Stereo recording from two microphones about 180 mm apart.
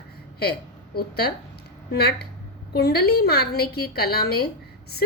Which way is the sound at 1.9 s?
65° left (ahead or behind).